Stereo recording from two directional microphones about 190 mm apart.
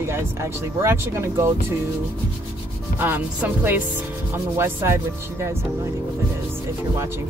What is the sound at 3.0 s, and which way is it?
Speech, 10° right (ahead or behind).